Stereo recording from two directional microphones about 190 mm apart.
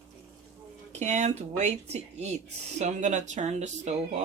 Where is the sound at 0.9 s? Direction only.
40° right (ahead or behind).